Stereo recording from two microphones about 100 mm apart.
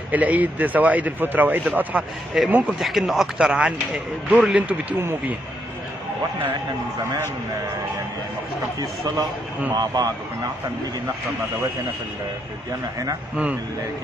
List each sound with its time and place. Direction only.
0.1 s speech: 15° right (ahead or behind)
8.7 s speech: 40° right (ahead or behind)